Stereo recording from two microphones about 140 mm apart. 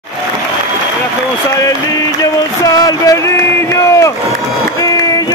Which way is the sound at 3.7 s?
20° left (ahead or behind).